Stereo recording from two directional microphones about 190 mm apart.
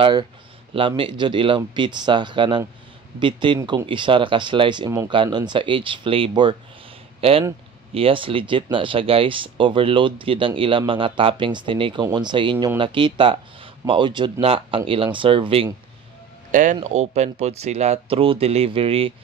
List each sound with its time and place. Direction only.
0.0 s speech: 25° right (ahead or behind)
16.5 s speech: 40° right (ahead or behind)